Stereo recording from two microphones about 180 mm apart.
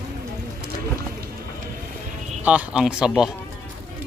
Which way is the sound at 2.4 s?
5° right (ahead or behind).